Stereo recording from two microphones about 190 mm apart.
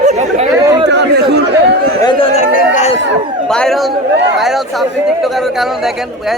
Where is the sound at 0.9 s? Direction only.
65° right (ahead or behind).